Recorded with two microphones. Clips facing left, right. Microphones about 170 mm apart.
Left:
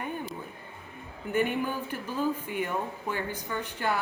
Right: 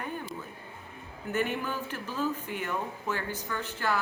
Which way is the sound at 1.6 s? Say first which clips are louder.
Left 2 dB; 15° left (ahead or behind).